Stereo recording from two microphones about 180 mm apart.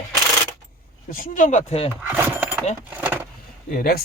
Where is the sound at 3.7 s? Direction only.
55° left (ahead or behind).